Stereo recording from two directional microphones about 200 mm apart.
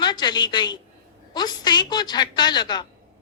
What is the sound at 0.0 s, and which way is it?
A woman's voice, 20° left (ahead or behind).